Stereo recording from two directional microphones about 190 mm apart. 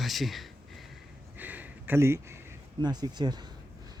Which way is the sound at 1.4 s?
10° right (ahead or behind).